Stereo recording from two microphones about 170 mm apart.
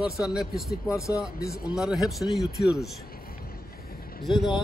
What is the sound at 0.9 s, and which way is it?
Speech, 20° left (ahead or behind).